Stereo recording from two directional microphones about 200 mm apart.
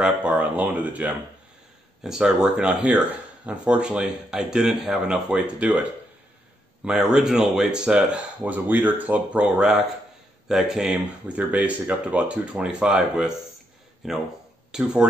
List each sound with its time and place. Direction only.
0.0 s speech: 5° right (ahead or behind)
6.8 s speech: 5° right (ahead or behind)